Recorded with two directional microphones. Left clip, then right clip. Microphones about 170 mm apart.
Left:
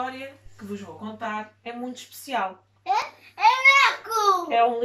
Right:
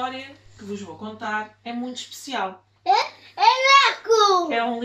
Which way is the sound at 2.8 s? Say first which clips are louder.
Right 5 dB; 45° right (ahead or behind).